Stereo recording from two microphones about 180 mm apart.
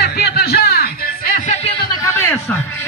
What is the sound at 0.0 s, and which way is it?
Music, 60° left (ahead or behind).